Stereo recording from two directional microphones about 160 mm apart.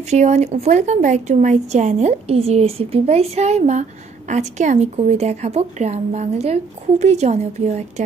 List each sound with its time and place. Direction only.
0.1 s a woman's voice: 45° right (ahead or behind)